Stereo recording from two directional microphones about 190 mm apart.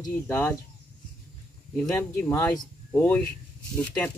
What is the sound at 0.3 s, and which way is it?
Speech, 10° left (ahead or behind).